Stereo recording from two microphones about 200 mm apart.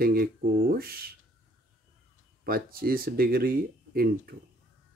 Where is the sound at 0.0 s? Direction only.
50° right (ahead or behind).